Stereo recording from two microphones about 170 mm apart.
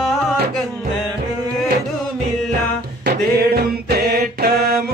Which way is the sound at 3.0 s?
70° right (ahead or behind).